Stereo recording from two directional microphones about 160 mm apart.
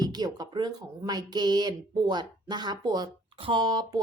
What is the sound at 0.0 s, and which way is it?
Speech, 25° right (ahead or behind).